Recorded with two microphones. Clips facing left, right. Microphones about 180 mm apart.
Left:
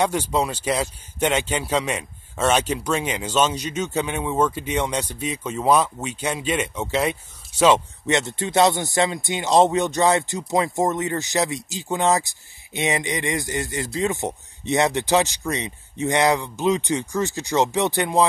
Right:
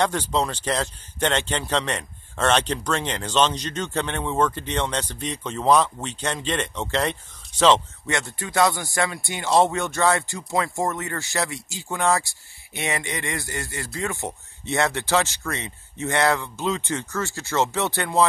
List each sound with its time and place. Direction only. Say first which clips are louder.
0.0 s speech: left 1 dB; 10° left (ahead or behind)
8.2 s speech: left 2 dB; 20° left (ahead or behind)